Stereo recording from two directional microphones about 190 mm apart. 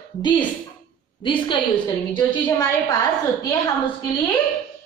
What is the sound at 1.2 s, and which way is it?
Speech, 25° left (ahead or behind).